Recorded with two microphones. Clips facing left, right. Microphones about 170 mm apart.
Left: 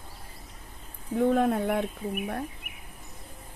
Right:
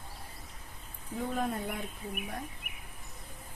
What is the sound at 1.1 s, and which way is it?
Speech, 60° left (ahead or behind).